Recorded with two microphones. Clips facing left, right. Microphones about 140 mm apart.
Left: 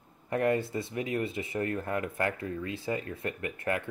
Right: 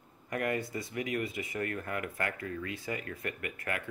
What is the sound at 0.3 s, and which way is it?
Speech, 30° left (ahead or behind).